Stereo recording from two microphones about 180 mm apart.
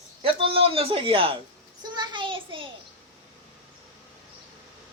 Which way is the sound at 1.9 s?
25° right (ahead or behind).